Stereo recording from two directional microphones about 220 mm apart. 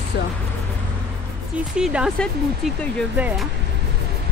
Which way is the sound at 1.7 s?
5° right (ahead or behind).